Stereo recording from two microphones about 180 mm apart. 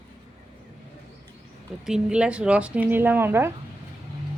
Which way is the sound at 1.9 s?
5° right (ahead or behind).